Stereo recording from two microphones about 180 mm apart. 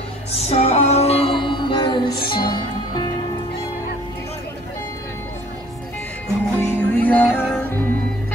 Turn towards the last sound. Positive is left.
turn(degrees=5)  # may be behind; listen again after turning